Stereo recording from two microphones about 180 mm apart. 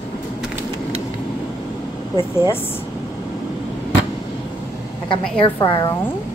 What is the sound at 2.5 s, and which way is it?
Speech, 10° left (ahead or behind).